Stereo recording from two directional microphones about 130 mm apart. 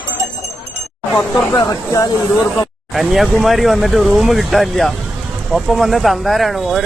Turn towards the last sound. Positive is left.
turn(degrees=0)  # may be behind; listen again after turning